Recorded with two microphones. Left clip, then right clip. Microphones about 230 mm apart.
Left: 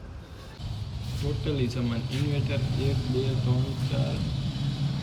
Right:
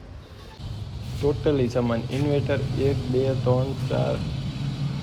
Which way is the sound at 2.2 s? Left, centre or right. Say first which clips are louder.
Right 10 dB; centre.